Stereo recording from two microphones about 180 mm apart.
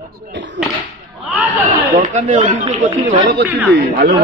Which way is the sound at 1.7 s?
45° right (ahead or behind).